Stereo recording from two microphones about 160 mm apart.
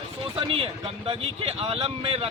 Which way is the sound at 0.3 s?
35° right (ahead or behind).